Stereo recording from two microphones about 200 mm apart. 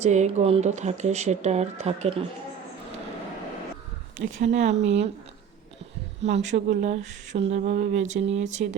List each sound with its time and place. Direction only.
0.0 s speech: 35° right (ahead or behind)
4.4 s speech: 35° right (ahead or behind)
6.2 s speech: 35° right (ahead or behind)